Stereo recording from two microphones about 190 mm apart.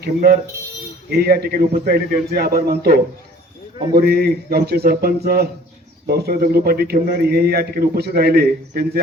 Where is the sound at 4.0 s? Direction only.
55° right (ahead or behind).